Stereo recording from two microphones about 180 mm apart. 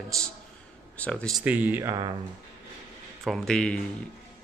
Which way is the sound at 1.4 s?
10° right (ahead or behind).